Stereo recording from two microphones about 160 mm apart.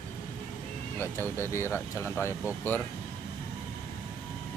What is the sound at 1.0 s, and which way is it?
Speech, 15° left (ahead or behind).